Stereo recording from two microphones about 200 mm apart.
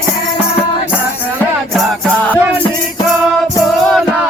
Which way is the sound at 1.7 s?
Centre (ahead or behind).